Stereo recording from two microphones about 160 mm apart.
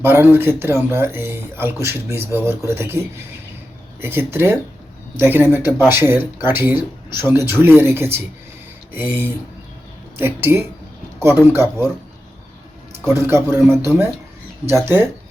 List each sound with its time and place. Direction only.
0.0 s speech: 15° right (ahead or behind)
4.0 s speech: 15° right (ahead or behind)
13.1 s speech: 15° right (ahead or behind)